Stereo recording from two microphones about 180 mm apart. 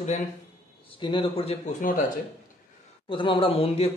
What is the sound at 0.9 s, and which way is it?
Speech, 30° left (ahead or behind).